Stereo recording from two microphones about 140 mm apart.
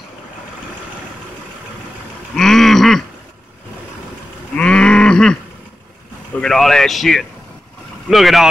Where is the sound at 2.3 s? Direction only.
5° left (ahead or behind).